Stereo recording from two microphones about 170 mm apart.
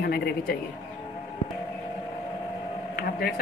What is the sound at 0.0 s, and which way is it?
Speech, 65° left (ahead or behind).